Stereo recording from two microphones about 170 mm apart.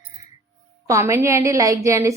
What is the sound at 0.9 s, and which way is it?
A woman's voice, 15° right (ahead or behind).